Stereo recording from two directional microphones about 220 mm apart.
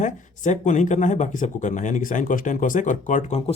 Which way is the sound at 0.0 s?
35° left (ahead or behind).